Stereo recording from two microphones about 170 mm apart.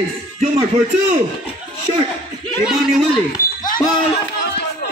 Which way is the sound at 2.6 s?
Centre (ahead or behind).